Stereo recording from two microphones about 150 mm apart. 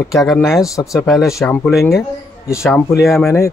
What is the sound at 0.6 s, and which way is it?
Speech, 20° left (ahead or behind).